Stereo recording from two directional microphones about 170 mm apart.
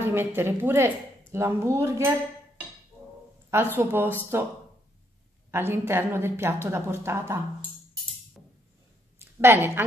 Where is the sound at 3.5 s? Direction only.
15° right (ahead or behind).